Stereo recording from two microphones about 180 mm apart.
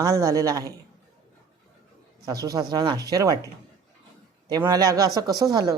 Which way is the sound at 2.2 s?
20° right (ahead or behind).